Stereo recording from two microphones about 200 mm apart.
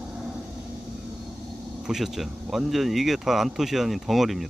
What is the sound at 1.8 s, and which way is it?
Speech, centre (ahead or behind).